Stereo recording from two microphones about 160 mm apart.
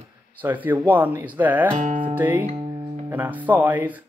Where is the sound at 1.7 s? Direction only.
50° right (ahead or behind).